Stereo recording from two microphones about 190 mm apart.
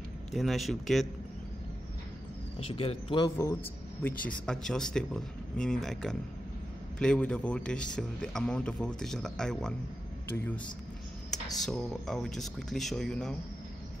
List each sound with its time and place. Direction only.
0.3 s a man's voice: centre (ahead or behind)
2.7 s speech: 30° left (ahead or behind)
4.3 s a man's voice: 5° left (ahead or behind)